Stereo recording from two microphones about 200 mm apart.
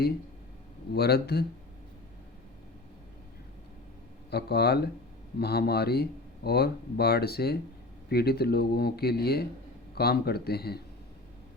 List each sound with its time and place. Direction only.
0.9 s speech: 50° left (ahead or behind)
4.3 s speech: 55° left (ahead or behind)